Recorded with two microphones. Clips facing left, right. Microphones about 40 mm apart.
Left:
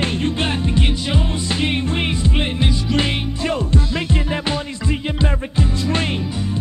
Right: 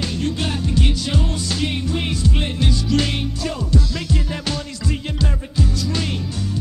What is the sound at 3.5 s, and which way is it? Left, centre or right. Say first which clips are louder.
Music: left 4 dB; left.